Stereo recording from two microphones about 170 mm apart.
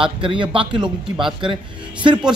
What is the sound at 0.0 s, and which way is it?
Speech, 30° right (ahead or behind).